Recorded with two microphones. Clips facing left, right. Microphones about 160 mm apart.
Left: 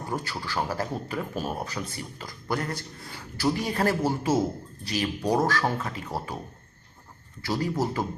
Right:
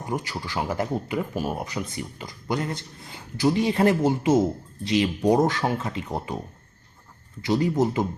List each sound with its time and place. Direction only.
0.0 s speech: 15° right (ahead or behind)
7.4 s speech: 20° right (ahead or behind)